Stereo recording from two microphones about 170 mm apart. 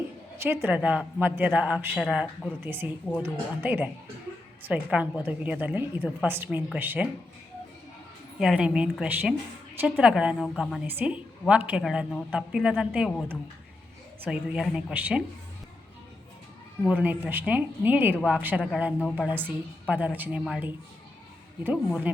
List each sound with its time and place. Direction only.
0.3 s a man's voice: 15° right (ahead or behind)
2.6 s a man's voice: 15° right (ahead or behind)
8.4 s a woman's voice: 5° right (ahead or behind)
10.8 s a man's voice: 10° right (ahead or behind)
14.3 s a woman's voice: centre (ahead or behind)
16.9 s a man's voice: 10° right (ahead or behind)
21.8 s a man's voice: 5° right (ahead or behind)